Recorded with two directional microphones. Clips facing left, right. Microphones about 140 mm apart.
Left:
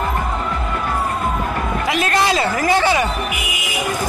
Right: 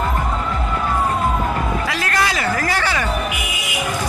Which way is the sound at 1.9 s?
20° left (ahead or behind).